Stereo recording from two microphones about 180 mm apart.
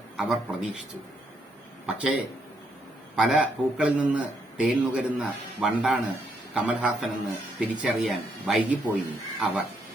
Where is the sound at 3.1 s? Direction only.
5° right (ahead or behind).